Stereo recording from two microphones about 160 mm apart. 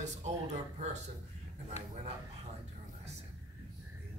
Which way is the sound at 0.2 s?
45° right (ahead or behind).